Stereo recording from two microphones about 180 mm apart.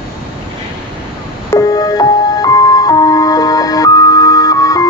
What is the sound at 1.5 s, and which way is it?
Music, 20° left (ahead or behind).